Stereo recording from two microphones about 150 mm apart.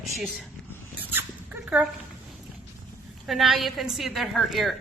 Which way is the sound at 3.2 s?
Centre (ahead or behind).